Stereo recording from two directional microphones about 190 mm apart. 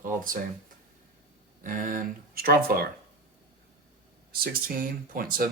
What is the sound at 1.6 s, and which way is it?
Speech, 45° right (ahead or behind).